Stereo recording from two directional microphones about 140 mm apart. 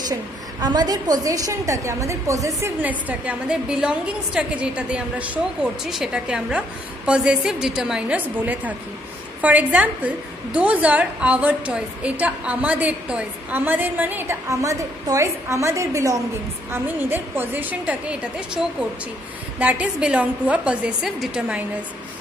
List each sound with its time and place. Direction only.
0.1 s a woman's voice: 30° right (ahead or behind)
2.8 s a woman's voice: 10° right (ahead or behind)